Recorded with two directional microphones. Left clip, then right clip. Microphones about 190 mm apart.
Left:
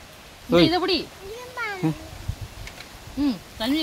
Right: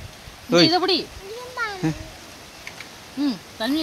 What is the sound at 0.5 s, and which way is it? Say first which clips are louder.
Speech: right 2 dB; 15° left (ahead or behind).